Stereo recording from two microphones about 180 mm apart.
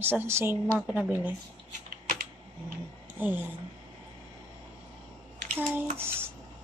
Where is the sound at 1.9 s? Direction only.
60° right (ahead or behind).